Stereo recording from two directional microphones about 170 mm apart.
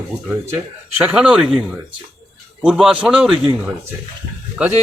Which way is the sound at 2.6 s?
5° right (ahead or behind).